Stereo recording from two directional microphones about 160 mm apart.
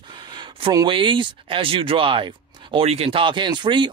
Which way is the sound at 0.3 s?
30° right (ahead or behind).